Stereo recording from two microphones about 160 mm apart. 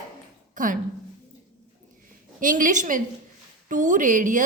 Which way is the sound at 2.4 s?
55° right (ahead or behind).